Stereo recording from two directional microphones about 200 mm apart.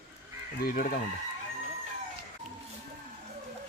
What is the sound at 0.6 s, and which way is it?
Speech, 45° left (ahead or behind).